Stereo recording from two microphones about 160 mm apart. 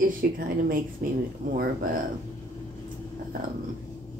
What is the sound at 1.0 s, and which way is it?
Speech, 65° right (ahead or behind).